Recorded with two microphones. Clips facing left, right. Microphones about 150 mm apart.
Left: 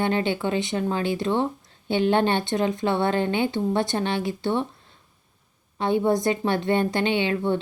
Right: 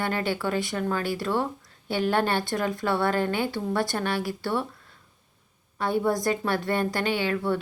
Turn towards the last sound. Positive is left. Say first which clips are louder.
# left 3 dB
turn(degrees=25)  # may be behind; listen again after turning